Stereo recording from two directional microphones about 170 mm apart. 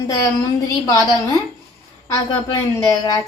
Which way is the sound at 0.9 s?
20° left (ahead or behind).